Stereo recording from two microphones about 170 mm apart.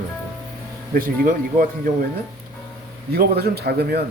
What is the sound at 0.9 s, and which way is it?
Speech, 55° right (ahead or behind).